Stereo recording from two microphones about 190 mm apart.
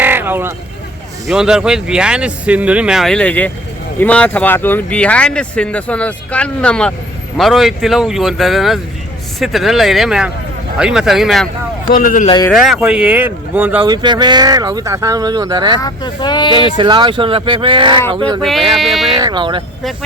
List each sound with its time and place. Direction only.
0.0 s vehicle: 10° right (ahead or behind)
1.3 s speech: 5° right (ahead or behind)
11.9 s speech: 45° left (ahead or behind)
12.5 s speech: centre (ahead or behind)
13.8 s speech: 20° right (ahead or behind)
15.8 s speech: 25° left (ahead or behind)
16.7 s speech: 25° right (ahead or behind)
18.7 s speech: centre (ahead or behind)
19.1 s speech: 20° right (ahead or behind)